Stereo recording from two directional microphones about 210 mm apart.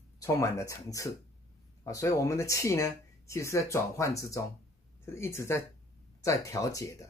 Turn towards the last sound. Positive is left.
turn(degrees=15)  # may be behind; listen again after turning